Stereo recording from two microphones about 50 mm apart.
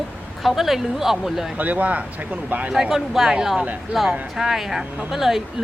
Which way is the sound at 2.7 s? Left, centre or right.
Centre.